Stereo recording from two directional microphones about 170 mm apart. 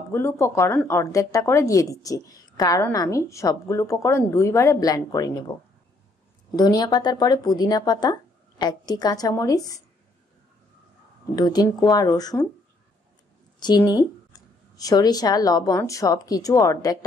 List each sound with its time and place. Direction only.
0.1 s speech: 15° left (ahead or behind)
11.3 s speech: 25° left (ahead or behind)
13.6 s speech: 25° left (ahead or behind)